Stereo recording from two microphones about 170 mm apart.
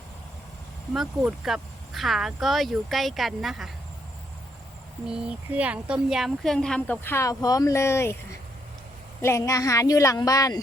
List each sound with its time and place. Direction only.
0.9 s speech: centre (ahead or behind)
5.0 s a woman's voice: 5° right (ahead or behind); by 10.6 s 20° left (ahead or behind)